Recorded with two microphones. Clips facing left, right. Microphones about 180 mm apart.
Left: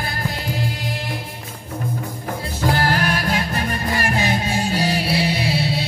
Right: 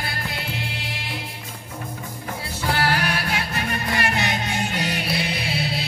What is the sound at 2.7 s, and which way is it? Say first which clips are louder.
Music: left 2 dB; 45° left (ahead or behind).